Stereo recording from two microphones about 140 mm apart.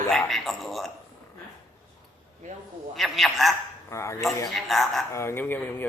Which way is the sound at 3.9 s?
20° left (ahead or behind).